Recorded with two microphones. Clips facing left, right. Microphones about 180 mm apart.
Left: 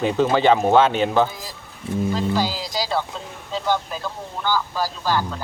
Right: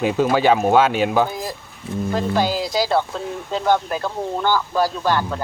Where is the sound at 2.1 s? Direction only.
55° right (ahead or behind).